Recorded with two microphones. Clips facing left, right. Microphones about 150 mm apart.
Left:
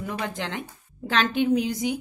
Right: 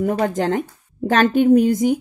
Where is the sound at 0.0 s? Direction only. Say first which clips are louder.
Right 12 dB; 45° right (ahead or behind).